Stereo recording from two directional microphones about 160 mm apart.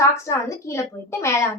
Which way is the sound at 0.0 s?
15° left (ahead or behind).